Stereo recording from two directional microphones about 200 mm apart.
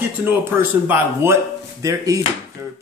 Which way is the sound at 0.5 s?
10° right (ahead or behind).